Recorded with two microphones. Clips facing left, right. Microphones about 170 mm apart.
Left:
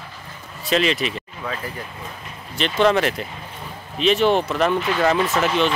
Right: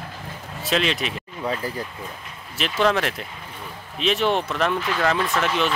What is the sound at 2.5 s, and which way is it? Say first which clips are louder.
Speech: left 3 dB; 5° right (ahead or behind).